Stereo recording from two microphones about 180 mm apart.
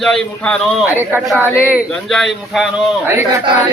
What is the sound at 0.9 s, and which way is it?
Speech, 10° right (ahead or behind).